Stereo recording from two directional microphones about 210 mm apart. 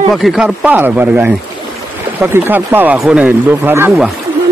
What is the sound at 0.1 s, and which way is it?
Speech, centre (ahead or behind).